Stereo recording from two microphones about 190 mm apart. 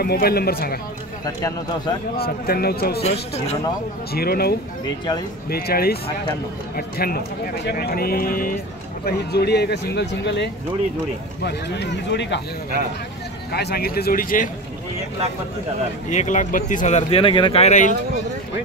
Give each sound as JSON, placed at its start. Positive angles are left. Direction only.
{"t": 0.0, "sound": "speech", "side_deg": 55}
{"t": 1.2, "sound": "speech", "side_deg": 20}
{"t": 2.1, "sound": "speech", "side_deg": 55}
{"t": 3.0, "sound": "speech", "side_deg": 35}
{"t": 4.1, "sound": "speech", "side_deg": 55}
{"t": 7.0, "sound": "speech", "side_deg": 50}
{"t": 13.5, "sound": "speech", "side_deg": 55}
{"t": 16.1, "sound": "speech", "side_deg": 40}